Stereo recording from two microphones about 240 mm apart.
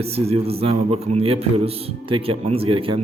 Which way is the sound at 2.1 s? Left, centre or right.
Right.